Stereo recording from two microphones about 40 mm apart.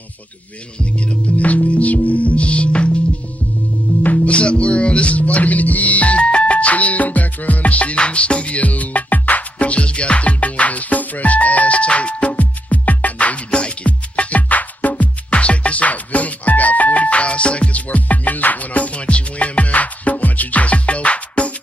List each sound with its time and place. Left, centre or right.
0.9 s music: left
4.3 s music: left
13.5 s music: left
15.2 s music: left